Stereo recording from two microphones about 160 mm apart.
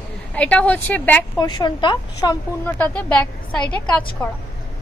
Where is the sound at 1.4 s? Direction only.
25° left (ahead or behind).